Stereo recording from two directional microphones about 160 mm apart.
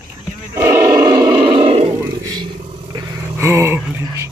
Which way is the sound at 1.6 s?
35° right (ahead or behind).